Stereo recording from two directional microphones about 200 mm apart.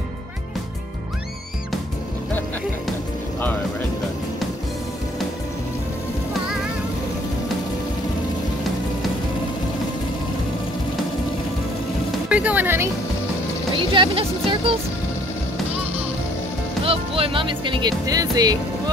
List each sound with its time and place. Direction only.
12.3 s speech: 5° right (ahead or behind)
13.7 s speech: 25° right (ahead or behind)
16.8 s speech: 25° right (ahead or behind)